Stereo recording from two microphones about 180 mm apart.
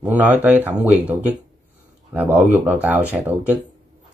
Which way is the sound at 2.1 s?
10° right (ahead or behind).